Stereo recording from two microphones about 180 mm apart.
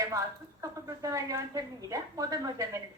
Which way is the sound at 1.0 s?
20° right (ahead or behind).